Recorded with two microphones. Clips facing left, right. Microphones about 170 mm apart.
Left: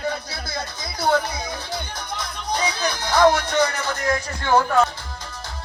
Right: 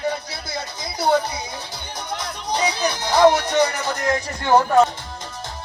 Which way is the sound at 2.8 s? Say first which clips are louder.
Right 2 dB; 15° right (ahead or behind).